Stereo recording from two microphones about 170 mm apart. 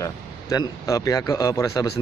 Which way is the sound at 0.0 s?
20° left (ahead or behind).